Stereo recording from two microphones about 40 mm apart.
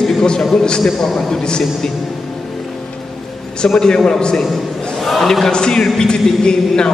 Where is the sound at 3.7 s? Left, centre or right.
Centre.